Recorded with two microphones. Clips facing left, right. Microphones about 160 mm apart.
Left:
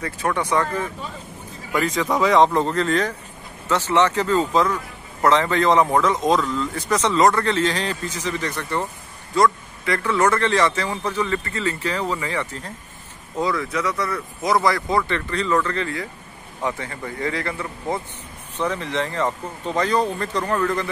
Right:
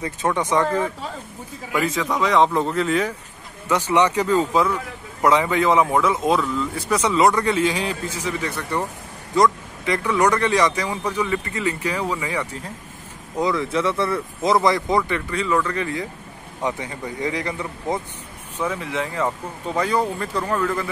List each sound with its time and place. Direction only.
0.0 s speech: 20° right (ahead or behind)
1.7 s speech: 5° right (ahead or behind)
13.4 s speech: 20° right (ahead or behind)
18.6 s speech: 5° right (ahead or behind)